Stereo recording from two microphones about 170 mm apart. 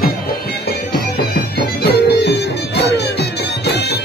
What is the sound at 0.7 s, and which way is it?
Music, 65° left (ahead or behind).